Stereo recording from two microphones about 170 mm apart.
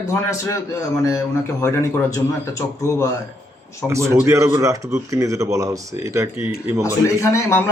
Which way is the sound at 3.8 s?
15° right (ahead or behind).